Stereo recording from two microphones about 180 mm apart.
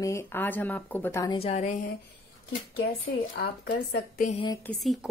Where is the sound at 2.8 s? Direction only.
90° left.